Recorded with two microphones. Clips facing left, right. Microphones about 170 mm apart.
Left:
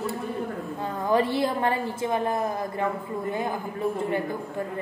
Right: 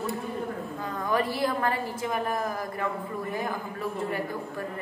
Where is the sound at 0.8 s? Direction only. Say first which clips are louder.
Left 5 dB; 25° left (ahead or behind).